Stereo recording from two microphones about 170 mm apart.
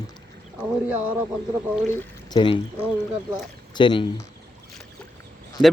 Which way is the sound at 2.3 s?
30° left (ahead or behind).